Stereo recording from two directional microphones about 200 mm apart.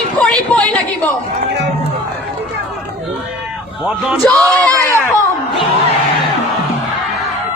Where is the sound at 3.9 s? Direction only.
Centre (ahead or behind).